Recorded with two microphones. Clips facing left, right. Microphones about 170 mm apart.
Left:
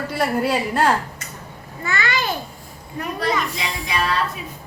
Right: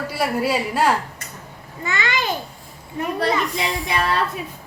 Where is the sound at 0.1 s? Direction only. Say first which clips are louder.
Left 1 dB; 5° right (ahead or behind).